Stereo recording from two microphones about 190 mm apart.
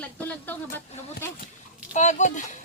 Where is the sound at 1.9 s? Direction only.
40° left (ahead or behind).